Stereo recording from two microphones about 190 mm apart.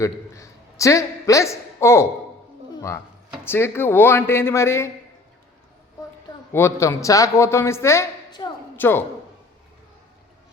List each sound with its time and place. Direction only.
0.0 s a man's voice: 15° left (ahead or behind)
3.4 s a man's voice: 10° left (ahead or behind)
6.5 s a man's voice: 15° left (ahead or behind)